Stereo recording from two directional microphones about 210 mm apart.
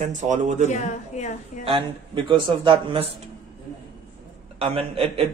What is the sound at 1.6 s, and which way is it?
A man's voice, 25° right (ahead or behind).